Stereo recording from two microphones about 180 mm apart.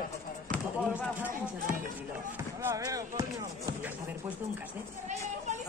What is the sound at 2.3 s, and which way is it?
Basketball bounce, 15° right (ahead or behind).